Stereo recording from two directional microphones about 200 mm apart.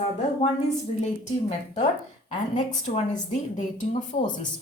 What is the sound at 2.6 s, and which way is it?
A woman's voice, 40° left (ahead or behind).